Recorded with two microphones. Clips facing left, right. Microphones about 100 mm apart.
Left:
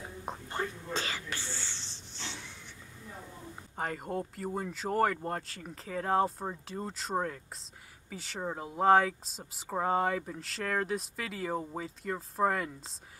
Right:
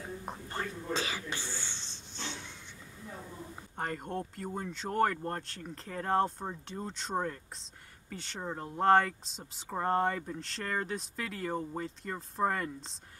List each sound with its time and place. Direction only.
0.2 s whispering: 15° left (ahead or behind)
0.9 s a sound: 15° right (ahead or behind)
3.7 s speech: centre (ahead or behind)